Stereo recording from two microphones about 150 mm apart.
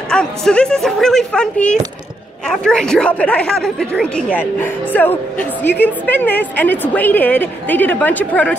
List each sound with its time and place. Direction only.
0.1 s a woman's voice: 5° left (ahead or behind)